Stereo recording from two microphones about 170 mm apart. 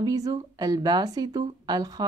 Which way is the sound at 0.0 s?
20° right (ahead or behind).